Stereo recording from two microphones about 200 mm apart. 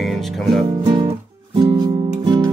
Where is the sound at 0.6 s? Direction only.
20° right (ahead or behind).